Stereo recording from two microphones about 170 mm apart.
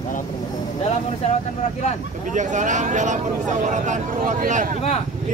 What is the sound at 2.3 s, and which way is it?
Speech, 45° right (ahead or behind).